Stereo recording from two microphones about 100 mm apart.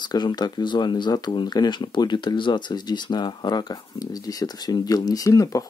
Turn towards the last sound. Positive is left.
turn(degrees=35)  # may be behind; listen again after turning